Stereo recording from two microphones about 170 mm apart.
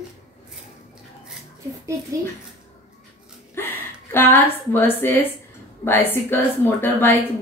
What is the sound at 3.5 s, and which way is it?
A woman's voice, 15° left (ahead or behind).